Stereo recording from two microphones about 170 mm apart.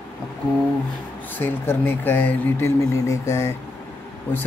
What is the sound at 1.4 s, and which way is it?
Speech, 10° left (ahead or behind).